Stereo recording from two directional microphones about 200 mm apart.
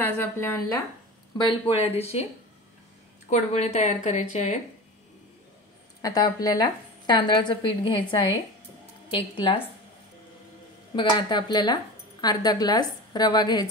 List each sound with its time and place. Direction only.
0.0 s speech: 10° left (ahead or behind)
1.4 s speech: 30° left (ahead or behind)
3.3 s speech: 35° left (ahead or behind)
6.0 s speech: 20° left (ahead or behind)
11.0 s speech: 20° left (ahead or behind)